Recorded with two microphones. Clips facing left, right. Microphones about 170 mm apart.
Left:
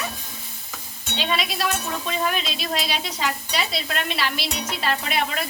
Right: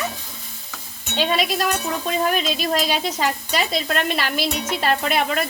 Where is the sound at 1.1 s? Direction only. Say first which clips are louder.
Right 5 dB; 50° right (ahead or behind).